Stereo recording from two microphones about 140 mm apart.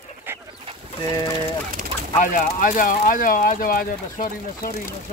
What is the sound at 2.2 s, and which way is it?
Speech, 70° left (ahead or behind).